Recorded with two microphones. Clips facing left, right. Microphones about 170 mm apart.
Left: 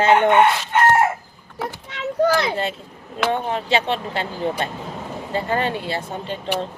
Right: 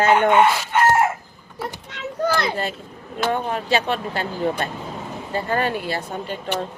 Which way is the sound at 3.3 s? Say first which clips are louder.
Even; 25° left (ahead or behind).